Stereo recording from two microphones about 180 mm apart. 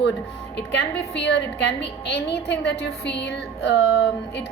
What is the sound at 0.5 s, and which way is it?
A woman's voice, 70° left (ahead or behind).